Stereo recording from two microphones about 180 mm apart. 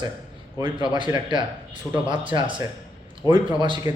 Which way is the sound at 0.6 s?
25° right (ahead or behind).